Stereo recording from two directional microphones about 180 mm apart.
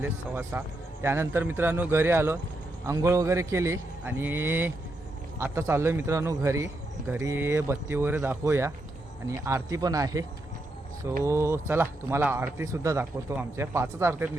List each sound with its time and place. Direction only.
0.0 s speech: 10° right (ahead or behind)